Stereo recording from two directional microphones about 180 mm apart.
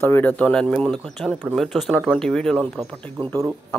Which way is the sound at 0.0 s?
10° left (ahead or behind).